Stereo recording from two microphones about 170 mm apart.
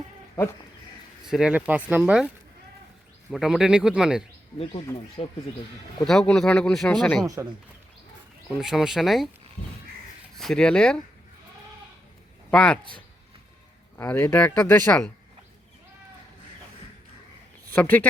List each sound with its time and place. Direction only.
1.2 s speech: 5° right (ahead or behind)
4.5 s speech: 35° left (ahead or behind)
6.1 s speech: 5° left (ahead or behind)
8.4 s speech: centre (ahead or behind)
9.6 s crow: 40° left (ahead or behind)
10.3 s speech: centre (ahead or behind)
12.5 s speech: 10° left (ahead or behind)
13.9 s speech: 15° left (ahead or behind)
17.7 s speech: 10° left (ahead or behind)